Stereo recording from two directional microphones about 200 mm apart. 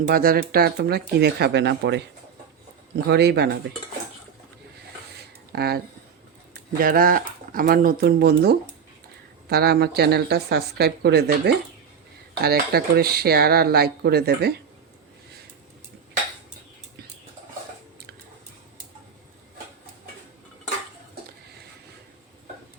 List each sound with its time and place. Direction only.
0.1 s speech: 50° right (ahead or behind)
5.5 s speech: 50° right (ahead or behind)